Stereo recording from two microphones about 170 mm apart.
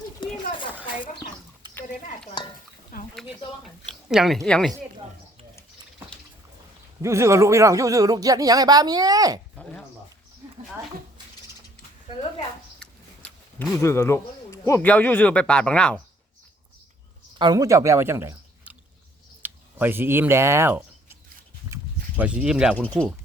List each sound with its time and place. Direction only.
1.6 s a sound: 30° right (ahead or behind)
3.2 s speech: centre (ahead or behind)
7.0 s speech: 15° right (ahead or behind)
12.8 s a sound: 5° left (ahead or behind)
13.8 s speech: 15° left (ahead or behind)
17.3 s speech: 25° right (ahead or behind)
19.4 s a sound: 10° right (ahead or behind)
22.2 s speech: 5° right (ahead or behind)
22.7 s speech: 10° left (ahead or behind)